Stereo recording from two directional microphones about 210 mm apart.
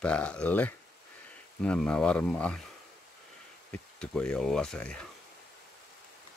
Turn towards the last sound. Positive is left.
turn(degrees=5)  # may be behind; listen again after turning